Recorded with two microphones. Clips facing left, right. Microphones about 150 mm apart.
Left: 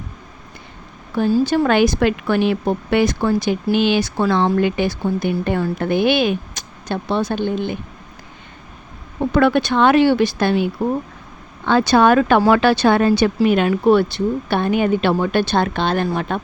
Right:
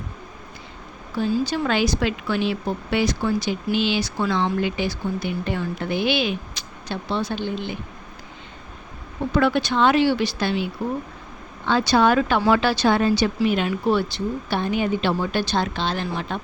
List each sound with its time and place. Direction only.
1.5 s speech: 55° left (ahead or behind)
9.3 s speech: 55° left (ahead or behind)